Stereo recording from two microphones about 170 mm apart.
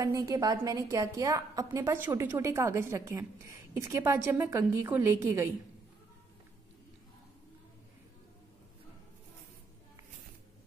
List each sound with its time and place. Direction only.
0.0 s a woman's voice: 20° right (ahead or behind)